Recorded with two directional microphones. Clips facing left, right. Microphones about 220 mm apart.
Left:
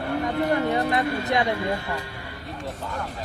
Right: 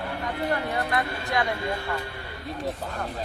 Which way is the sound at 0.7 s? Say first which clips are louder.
Left 4 dB; 20° left (ahead or behind).